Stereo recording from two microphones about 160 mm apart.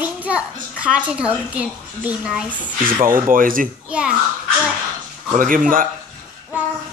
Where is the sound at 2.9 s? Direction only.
60° right (ahead or behind).